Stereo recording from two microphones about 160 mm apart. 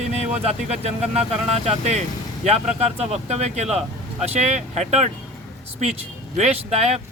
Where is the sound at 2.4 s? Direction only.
40° right (ahead or behind).